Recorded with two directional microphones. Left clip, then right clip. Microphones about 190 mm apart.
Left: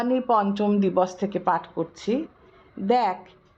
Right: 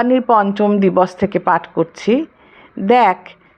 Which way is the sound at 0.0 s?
30° right (ahead or behind).